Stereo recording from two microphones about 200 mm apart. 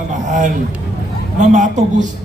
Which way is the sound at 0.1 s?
40° right (ahead or behind).